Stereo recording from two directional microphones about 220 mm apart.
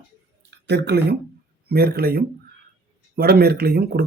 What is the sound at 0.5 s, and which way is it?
Speech, 50° right (ahead or behind).